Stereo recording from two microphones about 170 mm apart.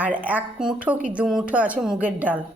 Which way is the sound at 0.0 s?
10° right (ahead or behind).